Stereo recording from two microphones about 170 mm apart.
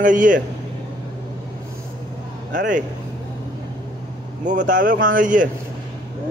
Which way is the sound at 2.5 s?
50° right (ahead or behind).